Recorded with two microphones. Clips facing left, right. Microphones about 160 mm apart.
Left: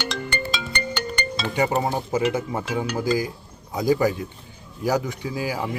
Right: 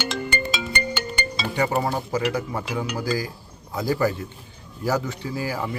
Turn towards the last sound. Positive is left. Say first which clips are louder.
# left 1 dB
turn(degrees=15)  # may be behind; listen again after turning